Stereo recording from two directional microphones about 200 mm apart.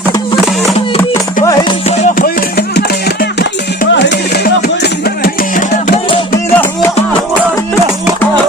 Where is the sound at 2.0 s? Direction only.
45° left (ahead or behind).